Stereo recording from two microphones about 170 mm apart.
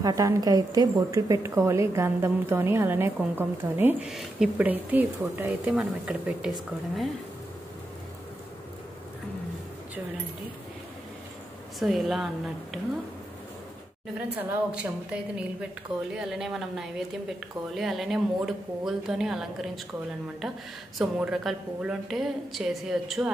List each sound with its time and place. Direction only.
0.0 s a woman's voice: 20° right (ahead or behind); by 6.5 s 5° right (ahead or behind)
11.8 s a woman's voice: centre (ahead or behind)
14.3 s a woman's voice: 10° right (ahead or behind)
21.0 s a woman's voice: centre (ahead or behind)